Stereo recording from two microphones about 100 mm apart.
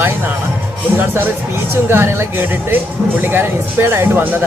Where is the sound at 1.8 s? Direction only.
25° right (ahead or behind).